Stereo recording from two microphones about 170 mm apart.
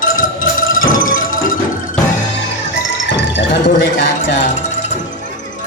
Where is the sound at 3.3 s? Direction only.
90° left.